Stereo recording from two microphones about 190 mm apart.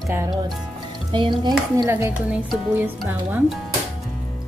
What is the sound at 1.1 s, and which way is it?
Speech, 25° right (ahead or behind).